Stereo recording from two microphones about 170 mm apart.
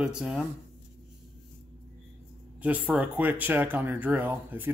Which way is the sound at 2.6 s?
10° right (ahead or behind).